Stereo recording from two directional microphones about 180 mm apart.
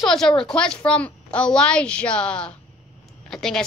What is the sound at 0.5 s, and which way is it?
A woman's voice, 5° left (ahead or behind).